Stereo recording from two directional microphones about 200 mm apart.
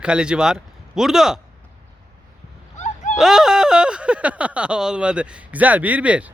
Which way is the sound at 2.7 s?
35° left (ahead or behind).